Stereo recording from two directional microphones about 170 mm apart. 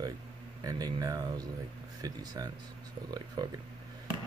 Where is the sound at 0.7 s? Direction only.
20° right (ahead or behind).